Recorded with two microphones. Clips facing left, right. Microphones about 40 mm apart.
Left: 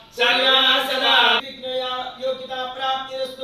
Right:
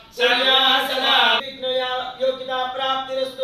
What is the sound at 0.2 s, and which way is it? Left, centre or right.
Chant, left.